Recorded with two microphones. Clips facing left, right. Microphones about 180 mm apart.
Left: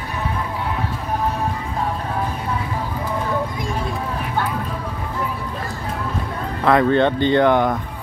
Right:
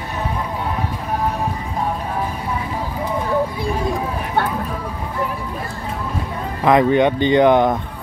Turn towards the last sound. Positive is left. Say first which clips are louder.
# right 2 dB
turn(degrees=-20)  # may be behind; listen again after turning